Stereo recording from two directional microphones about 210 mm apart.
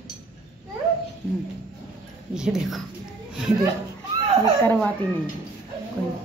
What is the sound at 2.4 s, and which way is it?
Speech, centre (ahead or behind).